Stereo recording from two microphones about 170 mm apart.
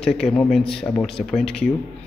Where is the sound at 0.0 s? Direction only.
5° left (ahead or behind).